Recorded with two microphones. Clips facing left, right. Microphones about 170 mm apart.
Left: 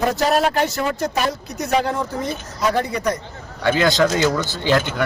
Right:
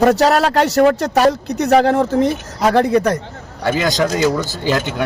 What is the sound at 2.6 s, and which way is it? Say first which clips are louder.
Speech: right 7 dB; 70° right (ahead or behind).